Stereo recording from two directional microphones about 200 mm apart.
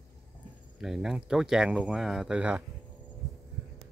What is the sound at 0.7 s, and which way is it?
Speech, centre (ahead or behind).